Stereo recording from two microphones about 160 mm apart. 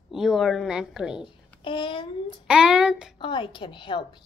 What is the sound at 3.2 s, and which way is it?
Speech, 30° left (ahead or behind).